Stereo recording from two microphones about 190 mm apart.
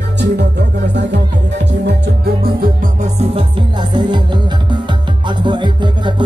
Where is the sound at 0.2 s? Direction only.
65° right (ahead or behind).